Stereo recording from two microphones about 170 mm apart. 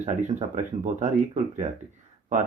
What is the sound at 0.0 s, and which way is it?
Speech, 45° right (ahead or behind).